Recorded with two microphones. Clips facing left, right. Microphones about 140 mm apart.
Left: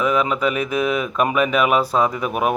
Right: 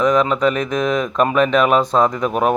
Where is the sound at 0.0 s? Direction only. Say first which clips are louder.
Right 4 dB; 5° left (ahead or behind).